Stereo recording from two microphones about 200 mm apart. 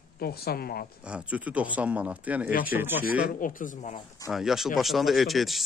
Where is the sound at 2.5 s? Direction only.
45° left (ahead or behind).